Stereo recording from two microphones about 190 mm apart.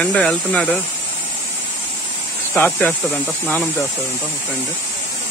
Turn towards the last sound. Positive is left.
turn(degrees=10)  # may be behind; listen again after turning